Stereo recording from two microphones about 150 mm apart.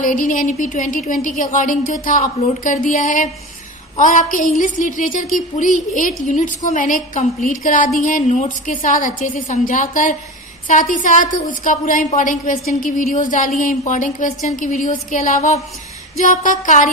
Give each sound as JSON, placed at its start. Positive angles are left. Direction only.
{"t": 0.0, "sound": "a woman's voice", "side_deg": 60}